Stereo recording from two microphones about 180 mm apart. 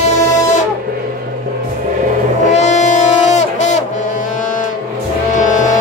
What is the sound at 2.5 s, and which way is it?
Music, 40° left (ahead or behind).